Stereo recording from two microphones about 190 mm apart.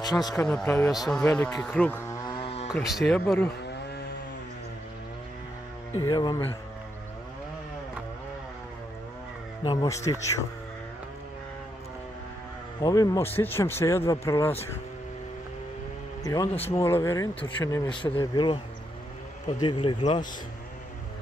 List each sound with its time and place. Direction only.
0.0 s speech: 20° left (ahead or behind)
0.4 s speech: 5° left (ahead or behind)
1.6 s music: 5° left (ahead or behind); by 2.7 s 30° left (ahead or behind)
2.8 s speech: centre (ahead or behind)
5.9 s speech: 25° left (ahead or behind)
9.6 s speech: 20° left (ahead or behind)
12.8 s speech: 20° left (ahead or behind)
16.3 s speech: 15° left (ahead or behind)
19.6 s speech: 25° left (ahead or behind)